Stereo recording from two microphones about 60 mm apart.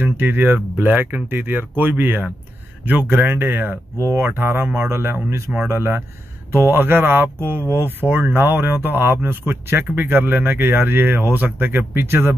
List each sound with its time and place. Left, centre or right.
0.0 s a man's voice: right